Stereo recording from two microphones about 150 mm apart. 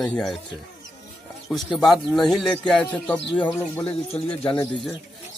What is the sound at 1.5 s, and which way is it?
Speech, centre (ahead or behind).